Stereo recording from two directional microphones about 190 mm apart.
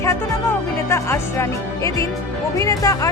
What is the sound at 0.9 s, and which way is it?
Speech, 15° left (ahead or behind).